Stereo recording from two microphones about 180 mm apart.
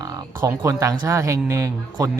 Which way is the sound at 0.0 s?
20° right (ahead or behind).